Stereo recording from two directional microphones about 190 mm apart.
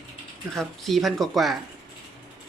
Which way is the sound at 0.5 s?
Centre (ahead or behind).